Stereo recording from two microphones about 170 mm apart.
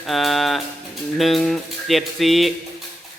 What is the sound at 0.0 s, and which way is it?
Music, centre (ahead or behind).